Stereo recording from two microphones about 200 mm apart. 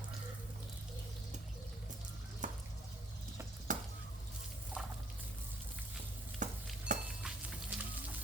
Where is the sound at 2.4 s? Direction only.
40° right (ahead or behind).